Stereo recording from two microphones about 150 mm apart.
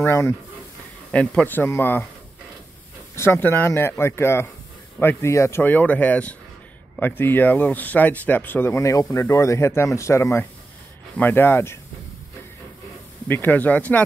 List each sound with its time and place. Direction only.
0.0 s speech: 15° left (ahead or behind)
3.2 s speech: 15° left (ahead or behind)
13.3 s speech: 10° left (ahead or behind)